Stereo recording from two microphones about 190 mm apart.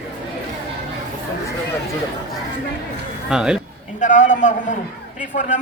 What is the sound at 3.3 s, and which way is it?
Speech, 5° right (ahead or behind).